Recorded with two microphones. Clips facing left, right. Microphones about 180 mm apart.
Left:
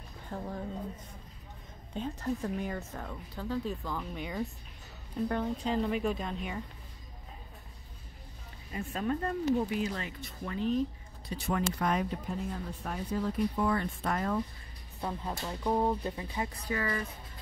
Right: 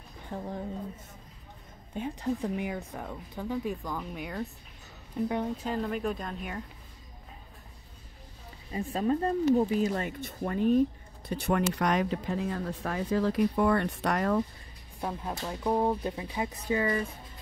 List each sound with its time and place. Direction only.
2.0 s speech: 10° right (ahead or behind)
5.7 s speech: centre (ahead or behind)
8.7 s speech: 30° right (ahead or behind); by 10.8 s 50° right (ahead or behind)
11.2 s speech: 60° right (ahead or behind)
15.0 s speech: 10° right (ahead or behind)
16.6 s speech: 25° right (ahead or behind)